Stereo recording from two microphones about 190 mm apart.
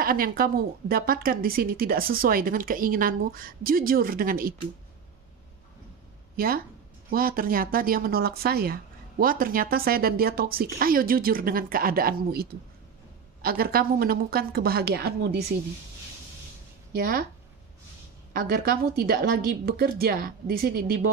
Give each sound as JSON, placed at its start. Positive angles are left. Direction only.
{"t": 0.0, "sound": "a woman's voice", "side_deg": -50}
{"t": 6.3, "sound": "a woman's voice", "side_deg": -50}
{"t": 16.9, "sound": "a woman's voice", "side_deg": -50}
{"t": 18.3, "sound": "a woman's voice", "side_deg": -50}